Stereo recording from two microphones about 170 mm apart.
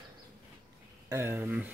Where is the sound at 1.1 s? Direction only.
15° right (ahead or behind).